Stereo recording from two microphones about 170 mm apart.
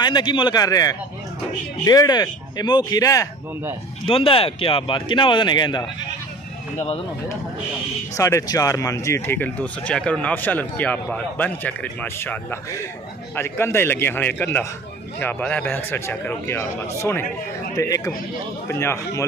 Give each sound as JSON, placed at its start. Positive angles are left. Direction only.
{"t": 0.0, "sound": "speech", "side_deg": 25}
{"t": 4.1, "sound": "speech", "side_deg": 35}
{"t": 8.2, "sound": "speech", "side_deg": 20}